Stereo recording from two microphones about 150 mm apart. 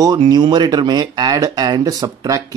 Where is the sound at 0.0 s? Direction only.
30° right (ahead or behind).